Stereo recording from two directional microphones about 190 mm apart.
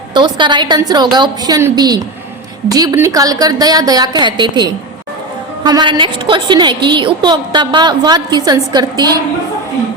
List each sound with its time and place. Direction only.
0.1 s a woman's voice: 25° right (ahead or behind)